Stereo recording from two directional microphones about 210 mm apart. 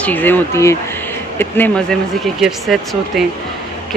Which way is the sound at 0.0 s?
10° left (ahead or behind).